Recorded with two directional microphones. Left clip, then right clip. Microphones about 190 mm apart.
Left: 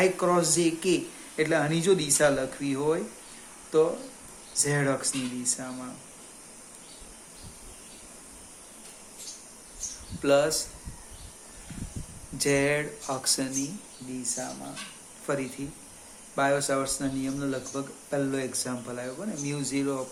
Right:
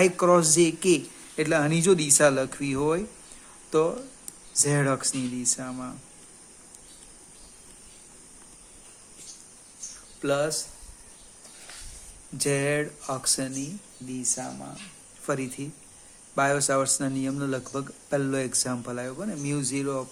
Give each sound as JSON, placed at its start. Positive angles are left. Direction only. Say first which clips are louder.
{"t": 0.0, "sound": "speech", "louder": "right 4 dB", "side_deg": -45}
{"t": 10.2, "sound": "speech", "louder": "left 3 dB", "side_deg": -30}
{"t": 12.4, "sound": "speech", "louder": "left 1 dB", "side_deg": -35}